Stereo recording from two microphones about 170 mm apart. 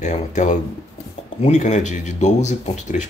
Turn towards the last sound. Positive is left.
turn(degrees=45)  # may be behind; listen again after turning